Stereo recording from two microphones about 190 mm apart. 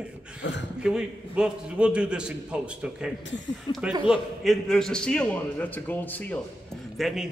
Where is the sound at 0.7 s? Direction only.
5° right (ahead or behind).